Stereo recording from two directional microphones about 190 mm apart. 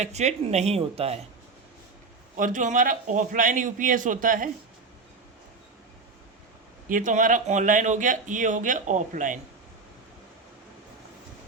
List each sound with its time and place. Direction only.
0.0 s speech: 35° right (ahead or behind)
2.3 s speech: 45° right (ahead or behind)
6.8 s speech: 45° right (ahead or behind)